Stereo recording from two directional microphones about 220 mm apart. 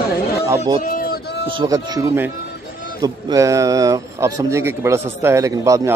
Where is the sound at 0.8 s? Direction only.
45° left (ahead or behind).